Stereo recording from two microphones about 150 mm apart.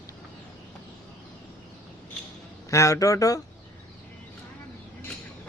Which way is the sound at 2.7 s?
20° left (ahead or behind).